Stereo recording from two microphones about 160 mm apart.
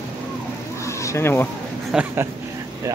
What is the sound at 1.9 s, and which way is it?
Speech, 10° right (ahead or behind).